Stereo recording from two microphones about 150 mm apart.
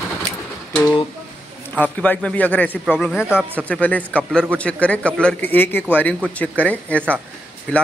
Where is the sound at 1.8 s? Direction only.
10° left (ahead or behind).